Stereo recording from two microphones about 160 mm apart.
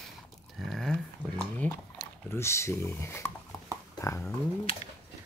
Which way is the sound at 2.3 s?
15° left (ahead or behind).